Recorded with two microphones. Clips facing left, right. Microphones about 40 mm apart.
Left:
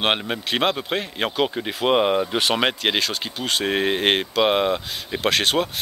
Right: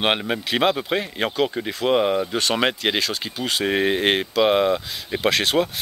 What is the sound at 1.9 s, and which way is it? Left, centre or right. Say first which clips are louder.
Speech: left 1 dB; left.